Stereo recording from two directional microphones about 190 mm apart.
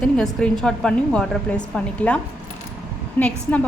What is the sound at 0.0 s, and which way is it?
A woman's voice, 5° left (ahead or behind).